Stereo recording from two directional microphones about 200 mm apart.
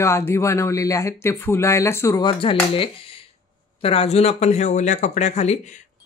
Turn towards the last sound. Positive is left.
turn(degrees=35)  # may be behind; listen again after turning